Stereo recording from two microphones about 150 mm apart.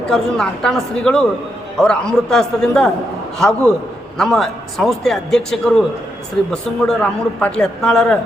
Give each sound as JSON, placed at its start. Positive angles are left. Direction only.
{"t": 0.1, "sound": "speech", "side_deg": 5}